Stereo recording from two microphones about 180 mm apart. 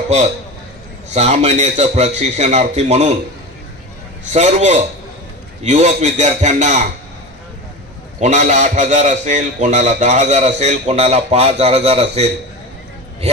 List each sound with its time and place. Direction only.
1.1 s a man's voice: 40° right (ahead or behind)
4.3 s a man's voice: 40° right (ahead or behind)
8.2 s a man's voice: 40° right (ahead or behind)